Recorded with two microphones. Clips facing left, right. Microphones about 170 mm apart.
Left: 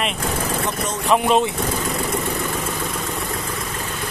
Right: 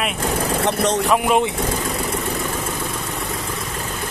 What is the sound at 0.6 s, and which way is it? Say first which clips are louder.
Speech: right 6 dB; 75° right (ahead or behind).